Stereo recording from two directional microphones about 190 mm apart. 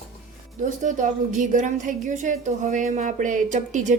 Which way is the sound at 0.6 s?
40° right (ahead or behind).